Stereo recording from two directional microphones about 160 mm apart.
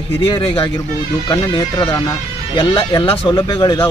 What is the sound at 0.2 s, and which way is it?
Speech, 35° left (ahead or behind).